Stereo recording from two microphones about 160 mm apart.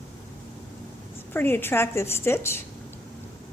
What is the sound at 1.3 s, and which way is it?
A woman's voice, 15° left (ahead or behind).